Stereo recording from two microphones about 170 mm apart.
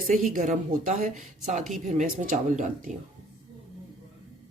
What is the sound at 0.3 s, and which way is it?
A woman's voice, 50° right (ahead or behind).